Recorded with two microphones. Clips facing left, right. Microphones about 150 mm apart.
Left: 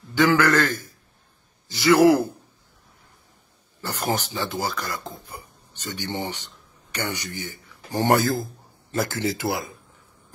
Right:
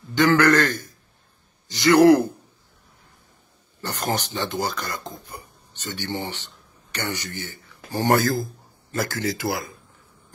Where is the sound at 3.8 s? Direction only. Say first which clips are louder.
Even; 10° left (ahead or behind).